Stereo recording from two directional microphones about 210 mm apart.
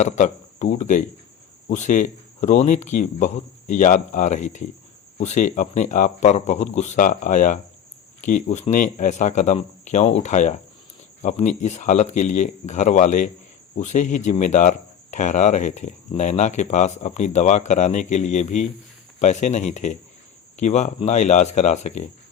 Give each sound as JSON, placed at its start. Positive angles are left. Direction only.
{"t": 0.0, "sound": "speech", "side_deg": 35}